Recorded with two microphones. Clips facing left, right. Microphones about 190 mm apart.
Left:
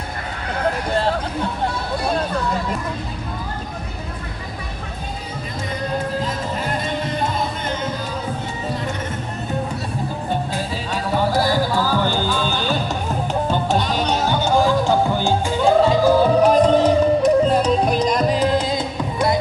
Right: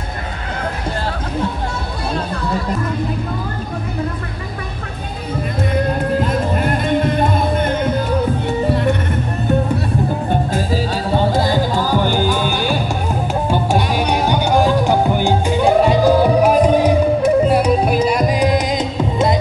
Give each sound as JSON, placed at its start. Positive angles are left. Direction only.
{"t": 5.6, "sound": "music", "side_deg": -60}
{"t": 10.5, "sound": "music", "side_deg": -35}